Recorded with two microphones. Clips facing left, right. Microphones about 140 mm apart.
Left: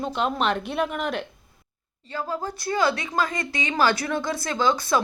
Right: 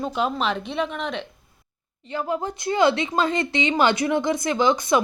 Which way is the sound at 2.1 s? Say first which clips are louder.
Right 3 dB; 20° right (ahead or behind).